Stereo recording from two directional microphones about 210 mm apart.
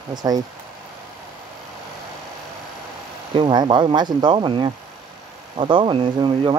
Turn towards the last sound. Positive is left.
turn(degrees=-20)  # may be behind; listen again after turning